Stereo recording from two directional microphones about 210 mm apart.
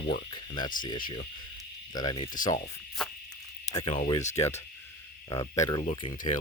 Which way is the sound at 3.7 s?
20° left (ahead or behind).